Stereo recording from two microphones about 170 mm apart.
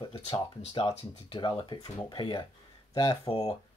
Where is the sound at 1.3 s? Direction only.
25° left (ahead or behind).